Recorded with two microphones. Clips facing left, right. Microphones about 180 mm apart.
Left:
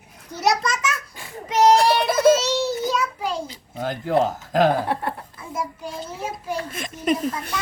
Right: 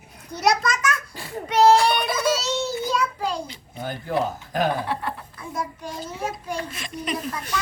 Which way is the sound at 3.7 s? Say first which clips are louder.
Left 4 dB; 85° left.